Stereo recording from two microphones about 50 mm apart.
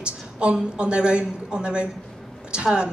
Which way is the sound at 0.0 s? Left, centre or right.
Right.